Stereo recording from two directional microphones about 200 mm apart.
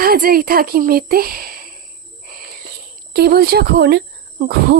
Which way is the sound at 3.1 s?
55° right (ahead or behind).